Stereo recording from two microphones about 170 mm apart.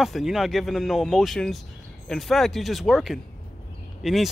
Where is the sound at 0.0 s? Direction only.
Centre (ahead or behind).